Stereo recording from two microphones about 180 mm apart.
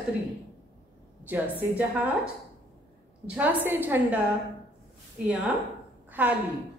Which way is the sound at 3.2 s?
10° right (ahead or behind).